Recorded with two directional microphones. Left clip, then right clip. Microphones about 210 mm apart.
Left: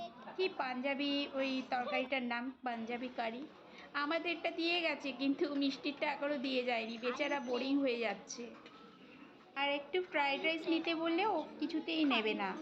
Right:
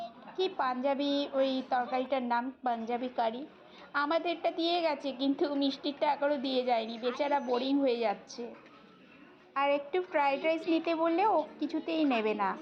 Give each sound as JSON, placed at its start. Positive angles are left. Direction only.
{"t": 0.3, "sound": "a woman's voice", "side_deg": -15}
{"t": 9.6, "sound": "a woman's voice", "side_deg": -20}